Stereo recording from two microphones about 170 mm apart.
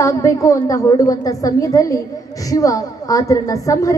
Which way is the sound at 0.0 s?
20° left (ahead or behind).